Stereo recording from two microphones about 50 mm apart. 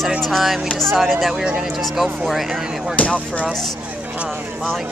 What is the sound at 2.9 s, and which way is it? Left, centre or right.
Speech, left.